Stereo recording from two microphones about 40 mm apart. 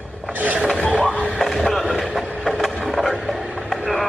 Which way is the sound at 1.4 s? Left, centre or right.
Centre.